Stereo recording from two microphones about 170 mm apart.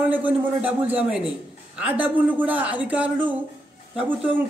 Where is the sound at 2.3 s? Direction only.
10° right (ahead or behind).